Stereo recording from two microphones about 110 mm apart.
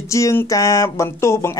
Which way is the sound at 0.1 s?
25° left (ahead or behind).